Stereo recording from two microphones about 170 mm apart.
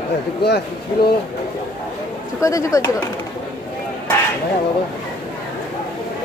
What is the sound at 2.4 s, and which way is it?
Speech, 20° left (ahead or behind).